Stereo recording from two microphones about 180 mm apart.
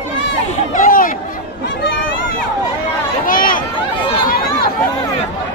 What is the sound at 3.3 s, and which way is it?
Run, 50° left (ahead or behind).